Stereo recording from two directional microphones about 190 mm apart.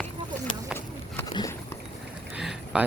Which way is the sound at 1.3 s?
20° left (ahead or behind).